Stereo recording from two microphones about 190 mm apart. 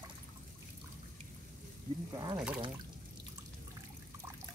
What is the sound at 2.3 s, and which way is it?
Speech, 5° right (ahead or behind).